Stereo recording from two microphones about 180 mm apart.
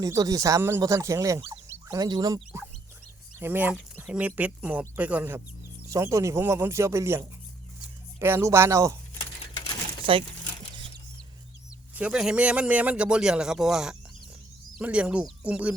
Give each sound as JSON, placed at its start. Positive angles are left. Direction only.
{"t": 0.0, "sound": "speech", "side_deg": -20}
{"t": 10.0, "sound": "speech", "side_deg": -30}
{"t": 11.9, "sound": "a man's voice", "side_deg": -5}